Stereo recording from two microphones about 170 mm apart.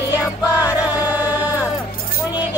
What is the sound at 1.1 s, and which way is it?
Music, 10° right (ahead or behind).